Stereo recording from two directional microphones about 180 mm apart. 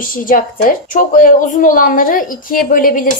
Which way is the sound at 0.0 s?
50° left (ahead or behind).